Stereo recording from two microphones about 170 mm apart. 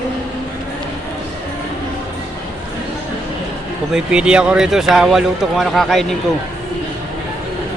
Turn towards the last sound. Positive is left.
turn(degrees=0)  # may be behind; listen again after turning